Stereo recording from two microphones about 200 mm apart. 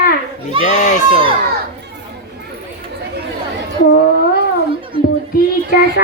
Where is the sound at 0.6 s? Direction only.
35° left (ahead or behind).